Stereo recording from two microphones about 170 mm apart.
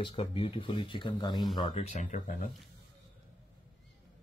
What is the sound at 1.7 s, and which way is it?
Speech, 45° left (ahead or behind).